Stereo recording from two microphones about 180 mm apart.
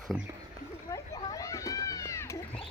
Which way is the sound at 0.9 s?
20° left (ahead or behind).